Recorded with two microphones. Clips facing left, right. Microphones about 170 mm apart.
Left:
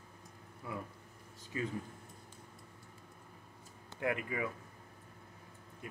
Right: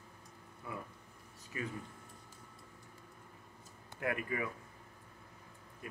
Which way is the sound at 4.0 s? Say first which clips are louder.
Left 1 dB; 20° left (ahead or behind).